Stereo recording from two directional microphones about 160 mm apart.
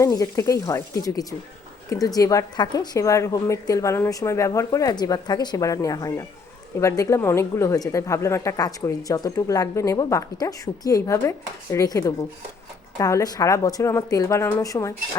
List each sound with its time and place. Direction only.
0.0 s a woman's voice: 20° left (ahead or behind)